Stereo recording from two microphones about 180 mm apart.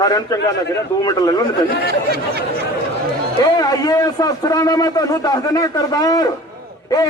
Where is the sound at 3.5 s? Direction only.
20° left (ahead or behind).